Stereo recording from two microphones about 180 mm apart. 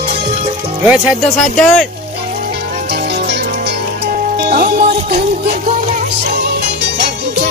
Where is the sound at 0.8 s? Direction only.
5° right (ahead or behind).